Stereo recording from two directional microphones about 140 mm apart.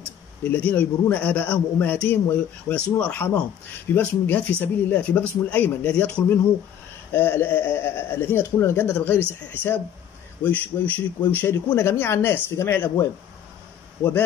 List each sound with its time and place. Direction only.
0.4 s a man's voice: 10° left (ahead or behind)